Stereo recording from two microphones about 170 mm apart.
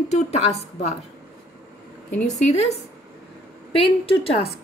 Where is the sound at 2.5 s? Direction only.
40° left (ahead or behind).